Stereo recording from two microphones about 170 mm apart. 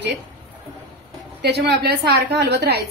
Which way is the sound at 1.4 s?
75° right (ahead or behind).